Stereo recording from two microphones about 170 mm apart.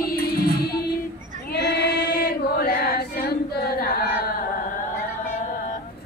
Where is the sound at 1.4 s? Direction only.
80° left; by 4.2 s 65° left (ahead or behind).